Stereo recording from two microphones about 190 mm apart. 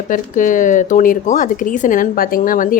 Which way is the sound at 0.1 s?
45° left (ahead or behind).